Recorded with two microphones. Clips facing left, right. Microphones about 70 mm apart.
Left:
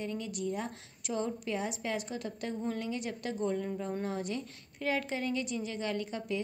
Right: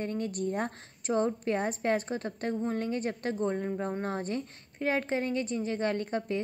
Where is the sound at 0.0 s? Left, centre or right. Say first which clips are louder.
Right 4 dB; right.